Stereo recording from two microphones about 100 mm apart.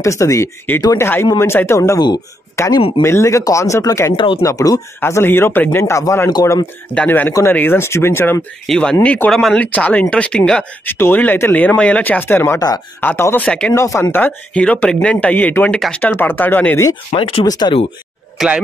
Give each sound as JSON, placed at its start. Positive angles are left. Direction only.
{"t": 0.0, "sound": "speech", "side_deg": 30}
{"t": 6.9, "sound": "speech", "side_deg": 15}
{"t": 8.6, "sound": "speech", "side_deg": 10}
{"t": 9.3, "sound": "speech", "side_deg": 5}
{"t": 9.6, "sound": "speech", "side_deg": 15}
{"t": 10.9, "sound": "speech", "side_deg": 20}
{"t": 12.5, "sound": "speech", "side_deg": 40}
{"t": 13.0, "sound": "speech", "side_deg": 20}
{"t": 13.7, "sound": "speech", "side_deg": 30}
{"t": 14.1, "sound": "speech", "side_deg": 15}
{"t": 17.1, "sound": "speech", "side_deg": 60}
{"t": 17.5, "sound": "speech", "side_deg": 45}
{"t": 18.4, "sound": "speech", "side_deg": 0}